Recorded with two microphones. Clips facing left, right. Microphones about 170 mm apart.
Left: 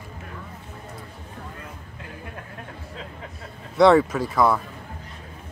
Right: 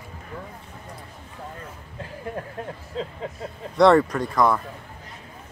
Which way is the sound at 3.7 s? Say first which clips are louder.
Even; centre (ahead or behind).